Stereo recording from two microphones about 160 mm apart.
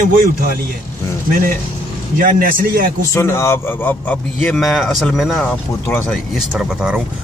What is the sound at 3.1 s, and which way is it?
Speech, 20° left (ahead or behind).